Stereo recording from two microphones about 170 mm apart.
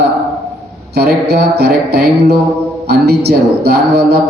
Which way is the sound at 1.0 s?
70° right (ahead or behind).